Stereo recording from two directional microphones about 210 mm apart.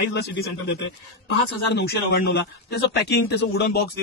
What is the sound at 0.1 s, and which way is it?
A man's voice, 55° left (ahead or behind).